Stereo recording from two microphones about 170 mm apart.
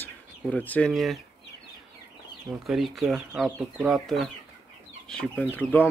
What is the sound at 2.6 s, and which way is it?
Speech, centre (ahead or behind).